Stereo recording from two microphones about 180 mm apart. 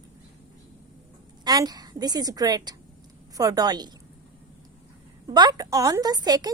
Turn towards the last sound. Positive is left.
turn(degrees=-20)  # may be behind; listen again after turning